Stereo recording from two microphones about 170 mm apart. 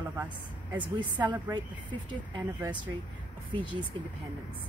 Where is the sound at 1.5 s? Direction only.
25° right (ahead or behind).